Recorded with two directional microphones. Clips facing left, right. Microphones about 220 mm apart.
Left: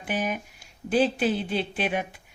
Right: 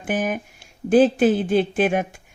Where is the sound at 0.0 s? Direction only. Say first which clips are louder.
Right 5 dB; 50° right (ahead or behind).